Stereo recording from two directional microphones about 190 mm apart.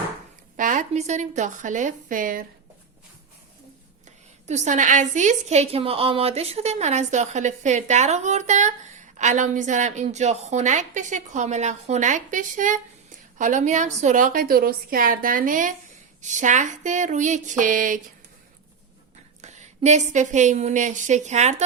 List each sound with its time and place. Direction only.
0.5 s a woman's voice: 45° right (ahead or behind)
4.4 s a woman's voice: 40° right (ahead or behind)
19.4 s a woman's voice: 35° right (ahead or behind)